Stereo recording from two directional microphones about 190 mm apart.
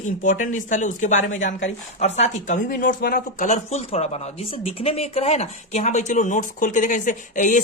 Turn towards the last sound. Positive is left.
turn(degrees=45)  # may be behind; listen again after turning